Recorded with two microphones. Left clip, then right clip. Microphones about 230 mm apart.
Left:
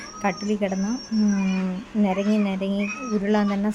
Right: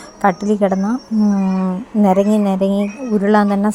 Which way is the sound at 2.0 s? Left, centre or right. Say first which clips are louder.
Right 10 dB; right.